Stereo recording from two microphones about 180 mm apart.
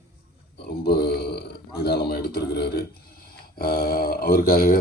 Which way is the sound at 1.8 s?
60° left (ahead or behind).